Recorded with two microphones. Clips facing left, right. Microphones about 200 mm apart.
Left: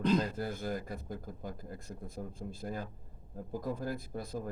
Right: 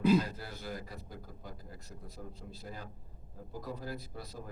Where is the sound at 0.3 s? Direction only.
50° left (ahead or behind).